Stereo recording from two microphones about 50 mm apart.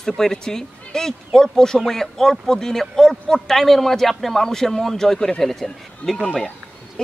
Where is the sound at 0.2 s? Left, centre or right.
Centre.